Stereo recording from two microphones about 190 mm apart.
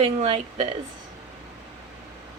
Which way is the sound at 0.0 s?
35° right (ahead or behind).